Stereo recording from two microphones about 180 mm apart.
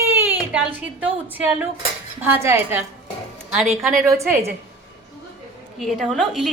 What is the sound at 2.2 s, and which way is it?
Speech, 10° right (ahead or behind).